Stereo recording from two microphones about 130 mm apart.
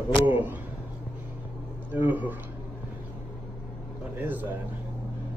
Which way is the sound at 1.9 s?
15° right (ahead or behind).